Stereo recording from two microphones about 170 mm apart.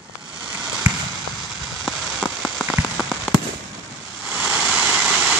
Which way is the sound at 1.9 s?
Centre (ahead or behind).